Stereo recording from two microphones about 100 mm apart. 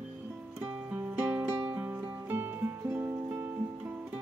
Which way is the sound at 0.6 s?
15° right (ahead or behind).